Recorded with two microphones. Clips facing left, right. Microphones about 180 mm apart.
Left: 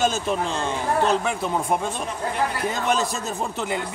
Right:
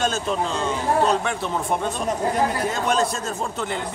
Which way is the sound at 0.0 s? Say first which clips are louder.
Left 1 dB; 5° left (ahead or behind).